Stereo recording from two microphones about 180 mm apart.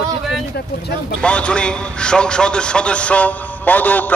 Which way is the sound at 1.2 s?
5° left (ahead or behind).